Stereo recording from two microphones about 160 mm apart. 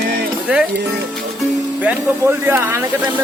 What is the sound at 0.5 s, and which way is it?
Speech, 10° right (ahead or behind).